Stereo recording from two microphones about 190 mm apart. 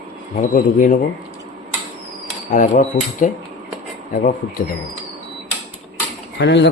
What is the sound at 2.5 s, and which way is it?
Speech, 40° left (ahead or behind).